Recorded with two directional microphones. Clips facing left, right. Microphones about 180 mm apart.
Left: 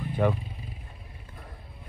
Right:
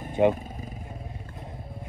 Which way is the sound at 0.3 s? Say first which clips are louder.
Right 3 dB; 45° right (ahead or behind).